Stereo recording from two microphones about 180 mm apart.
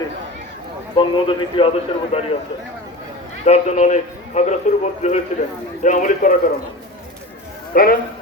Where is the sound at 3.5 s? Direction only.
35° left (ahead or behind).